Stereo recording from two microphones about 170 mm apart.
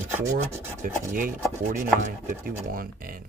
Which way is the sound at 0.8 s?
55° right (ahead or behind).